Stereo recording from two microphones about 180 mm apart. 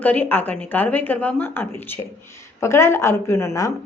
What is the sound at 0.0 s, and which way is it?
A woman's voice, 10° left (ahead or behind).